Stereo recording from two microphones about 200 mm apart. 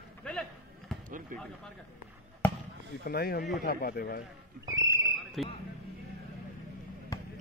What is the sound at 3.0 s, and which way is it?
Speech, 50° left (ahead or behind).